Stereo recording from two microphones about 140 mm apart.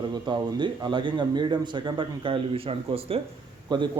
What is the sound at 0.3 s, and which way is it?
Speech, 35° right (ahead or behind).